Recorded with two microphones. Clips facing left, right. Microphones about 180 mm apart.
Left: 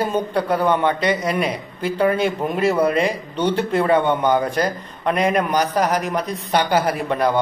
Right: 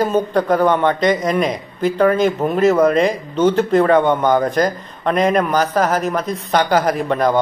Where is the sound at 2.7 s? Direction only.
45° right (ahead or behind).